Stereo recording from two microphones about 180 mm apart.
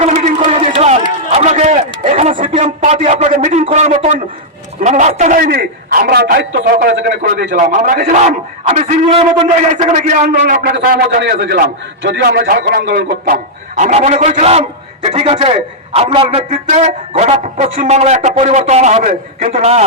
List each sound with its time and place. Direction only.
0.0 s a sound: 40° right (ahead or behind)
4.8 s a man's voice: 40° right (ahead or behind)
5.5 s a man's voice: 60° right (ahead or behind)
6.4 s a man's voice: 80° right
6.7 s a man's voice: 50° right (ahead or behind)
8.1 s a man's voice: 40° right (ahead or behind); by 13.1 s 70° right (ahead or behind)
13.7 s a man's voice: 40° right (ahead or behind)